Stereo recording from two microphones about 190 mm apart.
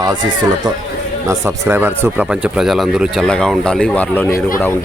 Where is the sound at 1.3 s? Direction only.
15° right (ahead or behind); by 4.3 s 10° left (ahead or behind).